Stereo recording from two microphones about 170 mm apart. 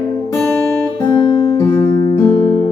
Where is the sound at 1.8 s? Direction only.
60° right (ahead or behind).